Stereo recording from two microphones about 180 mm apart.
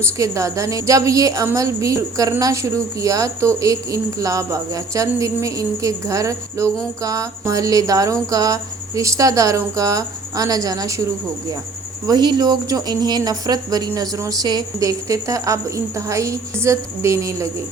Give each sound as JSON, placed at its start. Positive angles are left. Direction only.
{"t": 0.0, "sound": "speech", "side_deg": -15}
{"t": 12.0, "sound": "speech", "side_deg": -25}